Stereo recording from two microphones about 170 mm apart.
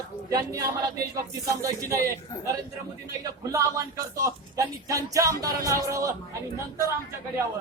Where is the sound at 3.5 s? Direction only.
20° right (ahead or behind).